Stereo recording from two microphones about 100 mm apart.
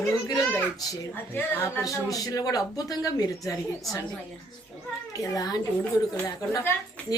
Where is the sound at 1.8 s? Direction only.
35° left (ahead or behind).